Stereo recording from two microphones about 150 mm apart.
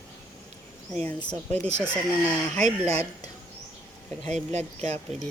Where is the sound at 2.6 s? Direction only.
45° right (ahead or behind).